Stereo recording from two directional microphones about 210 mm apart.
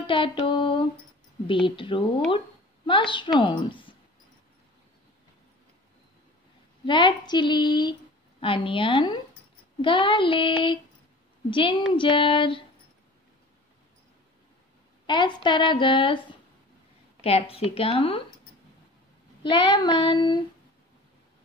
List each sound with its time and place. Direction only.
0.0 s a woman's voice: 25° left (ahead or behind)
6.9 s a woman's voice: 20° left (ahead or behind)
15.0 s a woman's voice: 20° left (ahead or behind)
17.2 s a woman's voice: 30° left (ahead or behind)
19.5 s a woman's voice: 20° left (ahead or behind)